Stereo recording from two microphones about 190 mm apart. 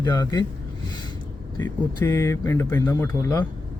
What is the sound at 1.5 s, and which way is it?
Speech, 15° left (ahead or behind).